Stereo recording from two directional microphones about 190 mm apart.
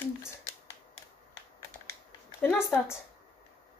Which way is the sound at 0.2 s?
15° left (ahead or behind).